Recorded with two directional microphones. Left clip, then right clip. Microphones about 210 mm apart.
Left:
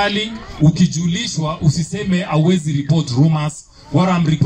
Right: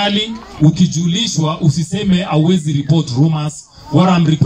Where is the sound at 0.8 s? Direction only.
30° left (ahead or behind).